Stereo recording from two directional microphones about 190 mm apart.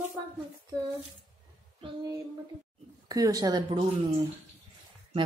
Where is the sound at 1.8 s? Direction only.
25° right (ahead or behind).